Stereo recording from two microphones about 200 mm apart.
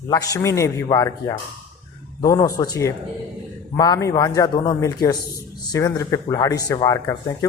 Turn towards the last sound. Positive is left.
turn(degrees=15)  # may be behind; listen again after turning